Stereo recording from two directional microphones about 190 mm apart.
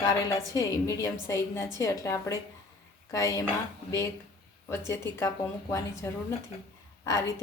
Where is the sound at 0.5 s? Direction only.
15° left (ahead or behind).